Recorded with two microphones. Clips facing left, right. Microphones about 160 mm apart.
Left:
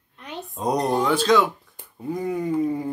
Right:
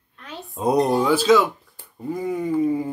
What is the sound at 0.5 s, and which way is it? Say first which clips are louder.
A man's voice: right 4 dB; 5° right (ahead or behind).